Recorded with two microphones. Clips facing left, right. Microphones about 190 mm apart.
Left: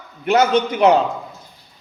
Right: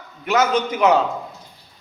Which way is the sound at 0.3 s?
30° left (ahead or behind).